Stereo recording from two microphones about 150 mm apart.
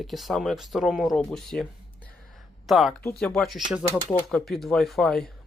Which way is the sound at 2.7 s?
Centre (ahead or behind).